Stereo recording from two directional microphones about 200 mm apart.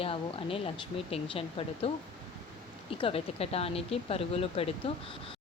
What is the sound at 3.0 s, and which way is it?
Speech, 30° left (ahead or behind).